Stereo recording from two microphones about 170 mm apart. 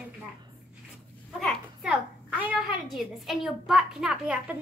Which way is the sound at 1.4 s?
Centre (ahead or behind).